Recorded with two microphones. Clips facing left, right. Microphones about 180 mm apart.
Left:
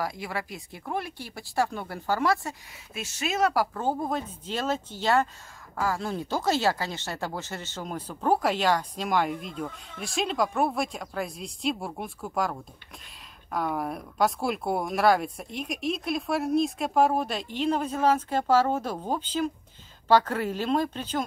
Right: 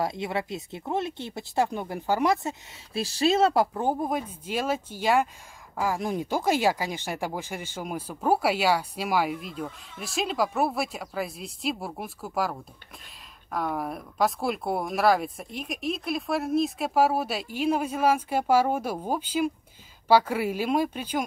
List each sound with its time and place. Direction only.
0.0 s speech: 25° right (ahead or behind)
2.9 s speech: 35° right (ahead or behind); by 21.2 s 10° right (ahead or behind)